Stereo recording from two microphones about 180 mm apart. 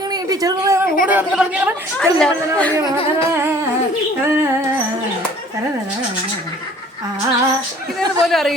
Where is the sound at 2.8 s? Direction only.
30° left (ahead or behind).